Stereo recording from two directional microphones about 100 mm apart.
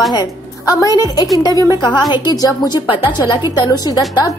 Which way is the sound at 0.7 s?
35° left (ahead or behind).